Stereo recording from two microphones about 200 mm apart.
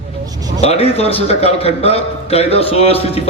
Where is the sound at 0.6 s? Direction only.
30° left (ahead or behind).